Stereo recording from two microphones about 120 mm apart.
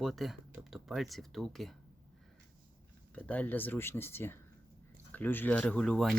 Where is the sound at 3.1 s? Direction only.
10° left (ahead or behind).